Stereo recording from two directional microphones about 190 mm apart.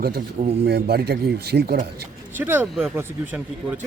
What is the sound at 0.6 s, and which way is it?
A man's voice, 60° right (ahead or behind).